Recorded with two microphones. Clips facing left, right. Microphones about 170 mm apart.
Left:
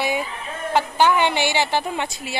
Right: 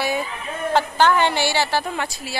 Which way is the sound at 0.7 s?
15° left (ahead or behind).